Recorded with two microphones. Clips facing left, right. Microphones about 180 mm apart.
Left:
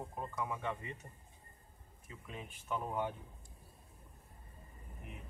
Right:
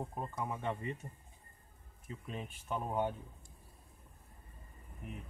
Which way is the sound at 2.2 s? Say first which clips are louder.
Right 1 dB; 35° right (ahead or behind).